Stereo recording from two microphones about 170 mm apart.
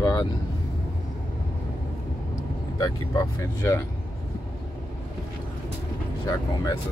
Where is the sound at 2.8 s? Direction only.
20° left (ahead or behind).